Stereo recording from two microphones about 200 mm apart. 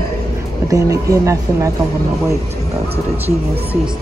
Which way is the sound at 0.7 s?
15° right (ahead or behind).